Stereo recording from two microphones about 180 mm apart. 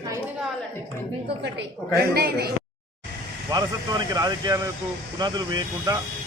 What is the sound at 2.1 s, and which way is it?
Speech, 60° right (ahead or behind).